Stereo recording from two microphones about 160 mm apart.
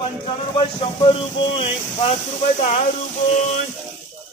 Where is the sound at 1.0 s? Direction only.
35° left (ahead or behind).